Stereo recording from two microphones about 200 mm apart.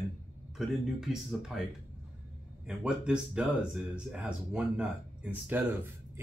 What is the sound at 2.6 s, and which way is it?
Speech, 5° right (ahead or behind).